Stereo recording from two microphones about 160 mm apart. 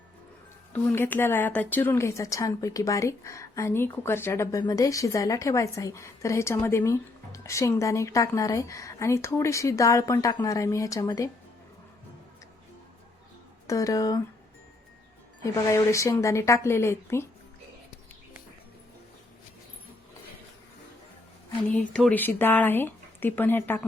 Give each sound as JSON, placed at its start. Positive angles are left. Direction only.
{"t": 0.7, "sound": "speech", "side_deg": 10}
{"t": 13.7, "sound": "speech", "side_deg": 20}
{"t": 15.4, "sound": "speech", "side_deg": 20}
{"t": 21.7, "sound": "speech", "side_deg": 5}